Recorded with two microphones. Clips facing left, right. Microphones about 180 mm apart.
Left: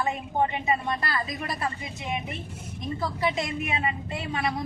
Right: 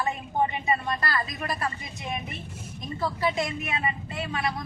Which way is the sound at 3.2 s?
20° left (ahead or behind).